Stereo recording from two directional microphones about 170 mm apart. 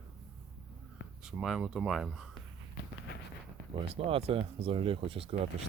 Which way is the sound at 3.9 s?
35° right (ahead or behind).